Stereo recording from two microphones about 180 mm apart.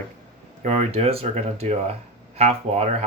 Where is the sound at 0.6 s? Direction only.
40° right (ahead or behind).